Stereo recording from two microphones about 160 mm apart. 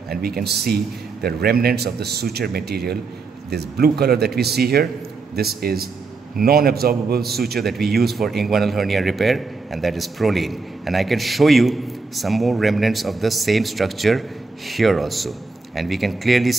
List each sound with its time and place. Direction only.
0.1 s a man's voice: 75° right (ahead or behind)
7.6 s speech: centre (ahead or behind)